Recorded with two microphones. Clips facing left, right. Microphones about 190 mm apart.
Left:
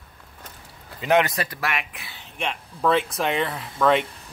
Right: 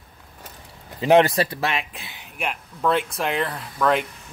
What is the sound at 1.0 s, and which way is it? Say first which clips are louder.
Speech: right 5 dB; 30° right (ahead or behind).